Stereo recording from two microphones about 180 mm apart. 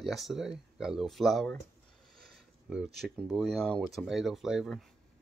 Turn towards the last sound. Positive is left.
turn(degrees=0)  # may be behind; listen again after turning